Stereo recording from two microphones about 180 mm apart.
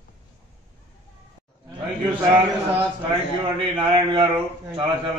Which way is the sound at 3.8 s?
20° right (ahead or behind).